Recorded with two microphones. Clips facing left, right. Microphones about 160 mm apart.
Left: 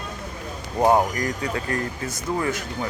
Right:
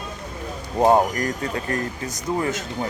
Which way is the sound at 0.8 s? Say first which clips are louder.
Right 2 dB; 20° right (ahead or behind).